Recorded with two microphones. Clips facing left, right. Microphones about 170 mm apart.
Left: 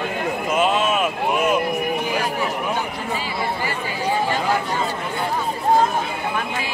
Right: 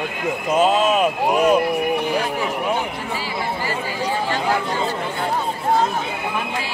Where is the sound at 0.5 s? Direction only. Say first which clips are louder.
Right 3 dB; 35° right (ahead or behind).